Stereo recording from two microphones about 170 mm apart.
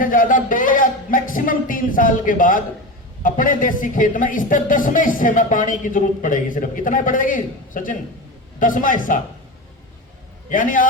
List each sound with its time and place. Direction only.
0.0 s speech: 55° left (ahead or behind)
10.5 s speech: 55° left (ahead or behind)